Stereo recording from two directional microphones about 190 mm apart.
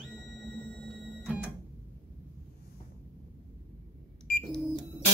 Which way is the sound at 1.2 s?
10° right (ahead or behind).